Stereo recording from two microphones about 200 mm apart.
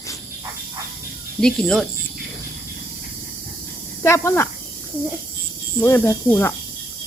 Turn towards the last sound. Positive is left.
turn(degrees=10)  # may be behind; listen again after turning